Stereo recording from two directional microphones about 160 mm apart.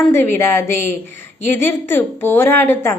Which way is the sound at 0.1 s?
15° left (ahead or behind).